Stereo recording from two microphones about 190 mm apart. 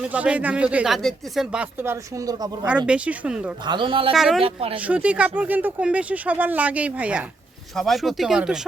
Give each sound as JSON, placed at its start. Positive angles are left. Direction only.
{"t": 0.0, "sound": "speech", "side_deg": -5}
{"t": 2.8, "sound": "speech", "side_deg": -5}
{"t": 3.7, "sound": "speech", "side_deg": -25}
{"t": 4.1, "sound": "speech", "side_deg": 0}
{"t": 4.4, "sound": "speech", "side_deg": -30}
{"t": 4.8, "sound": "speech", "side_deg": -5}